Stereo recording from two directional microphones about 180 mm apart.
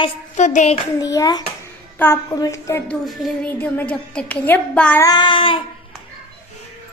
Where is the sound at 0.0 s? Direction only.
40° left (ahead or behind).